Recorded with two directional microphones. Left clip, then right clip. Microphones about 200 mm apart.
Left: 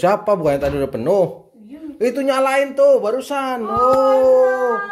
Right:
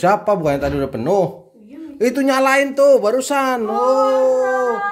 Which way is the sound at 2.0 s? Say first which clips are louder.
Right 1 dB; 15° right (ahead or behind).